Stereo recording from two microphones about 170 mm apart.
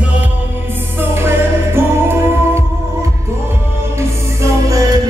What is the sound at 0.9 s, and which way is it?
Music, 15° right (ahead or behind).